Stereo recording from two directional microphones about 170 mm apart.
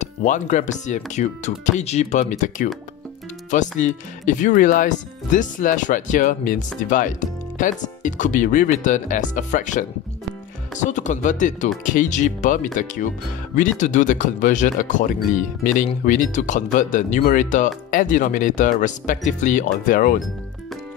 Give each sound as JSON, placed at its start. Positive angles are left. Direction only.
{"t": 0.0, "sound": "speech", "side_deg": 45}
{"t": 3.8, "sound": "speech", "side_deg": 45}